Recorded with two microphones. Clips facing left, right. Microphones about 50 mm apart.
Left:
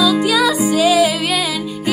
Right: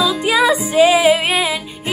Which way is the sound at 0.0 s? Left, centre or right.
Right.